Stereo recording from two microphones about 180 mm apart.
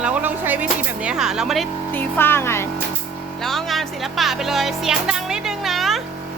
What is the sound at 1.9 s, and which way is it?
Speech, 10° left (ahead or behind).